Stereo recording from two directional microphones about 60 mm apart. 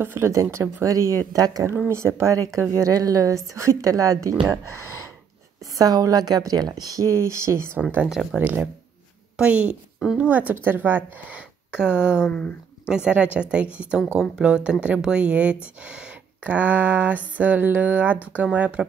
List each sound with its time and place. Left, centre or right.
0.0 s speech: right
0.3 s speech: right
0.8 s a woman's voice: right
1.9 s speech: right
2.8 s a woman's voice: right
5.6 s a woman's voice: right
8.4 s speech: right
9.4 s a sound: centre
11.8 s speech: centre
12.3 s speech: left
12.8 s a sound: centre
13.7 s speech: centre
15.8 s a sound: centre